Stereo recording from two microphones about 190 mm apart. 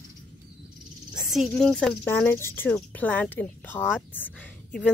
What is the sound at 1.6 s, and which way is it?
Speech, 5° left (ahead or behind).